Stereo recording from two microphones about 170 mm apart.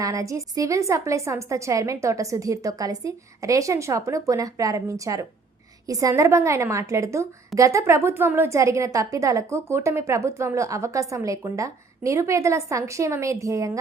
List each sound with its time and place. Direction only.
0.0 s a woman's voice: 20° right (ahead or behind)